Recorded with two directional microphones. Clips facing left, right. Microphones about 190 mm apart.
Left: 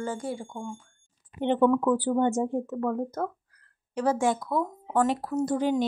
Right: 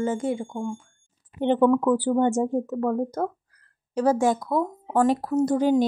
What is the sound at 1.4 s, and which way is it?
Speech, 40° right (ahead or behind).